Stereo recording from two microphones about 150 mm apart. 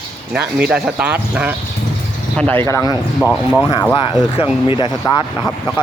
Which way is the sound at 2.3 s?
10° left (ahead or behind).